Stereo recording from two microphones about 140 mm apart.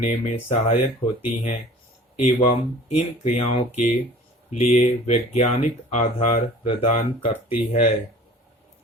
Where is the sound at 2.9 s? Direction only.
50° left (ahead or behind).